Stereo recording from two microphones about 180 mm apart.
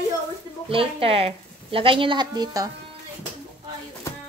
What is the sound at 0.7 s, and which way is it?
A woman's voice, 30° right (ahead or behind).